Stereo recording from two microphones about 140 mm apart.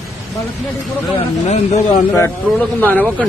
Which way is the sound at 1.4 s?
55° left (ahead or behind).